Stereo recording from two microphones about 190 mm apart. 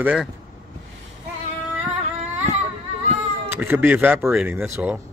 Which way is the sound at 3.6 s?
10° right (ahead or behind).